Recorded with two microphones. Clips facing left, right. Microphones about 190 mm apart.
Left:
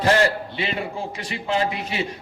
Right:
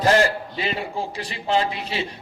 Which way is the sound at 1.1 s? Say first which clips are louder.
Right 3 dB; 35° right (ahead or behind).